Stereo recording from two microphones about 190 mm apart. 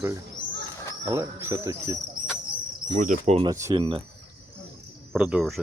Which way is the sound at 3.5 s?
15° right (ahead or behind).